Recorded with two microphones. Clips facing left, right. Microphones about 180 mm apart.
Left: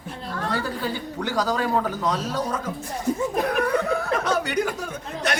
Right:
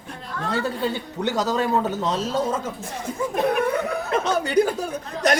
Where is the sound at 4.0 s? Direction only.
20° right (ahead or behind).